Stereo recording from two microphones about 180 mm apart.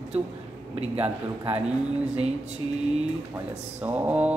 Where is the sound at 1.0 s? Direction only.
10° right (ahead or behind).